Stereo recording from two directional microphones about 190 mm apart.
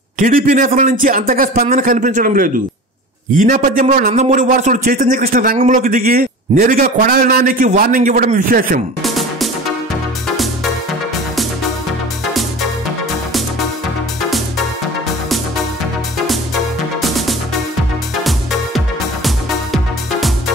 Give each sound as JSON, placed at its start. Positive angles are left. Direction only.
{"t": 0.2, "sound": "a man's voice", "side_deg": -45}
{"t": 9.0, "sound": "music", "side_deg": 0}
{"t": 19.2, "sound": "music", "side_deg": 0}